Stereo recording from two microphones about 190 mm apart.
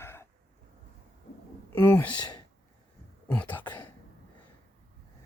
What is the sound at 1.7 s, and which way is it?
Speech, 10° left (ahead or behind).